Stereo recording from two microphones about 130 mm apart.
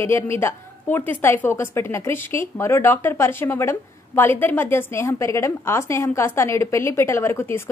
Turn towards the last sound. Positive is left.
turn(degrees=20)  # may be behind; listen again after turning